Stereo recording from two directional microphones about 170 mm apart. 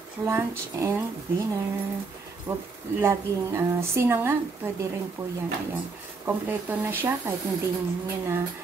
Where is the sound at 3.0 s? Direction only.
15° right (ahead or behind).